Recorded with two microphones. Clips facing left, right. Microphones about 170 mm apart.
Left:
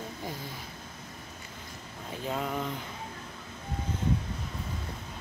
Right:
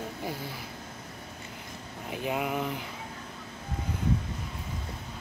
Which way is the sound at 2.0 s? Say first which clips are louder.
Right 2 dB; 15° right (ahead or behind).